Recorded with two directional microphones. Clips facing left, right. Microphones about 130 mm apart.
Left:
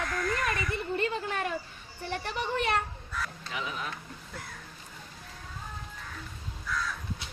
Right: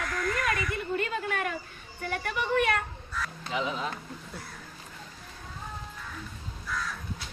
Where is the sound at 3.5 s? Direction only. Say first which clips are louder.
Right 6 dB; 30° right (ahead or behind).